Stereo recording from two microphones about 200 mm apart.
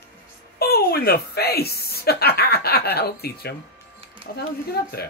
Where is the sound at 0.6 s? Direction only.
50° left (ahead or behind).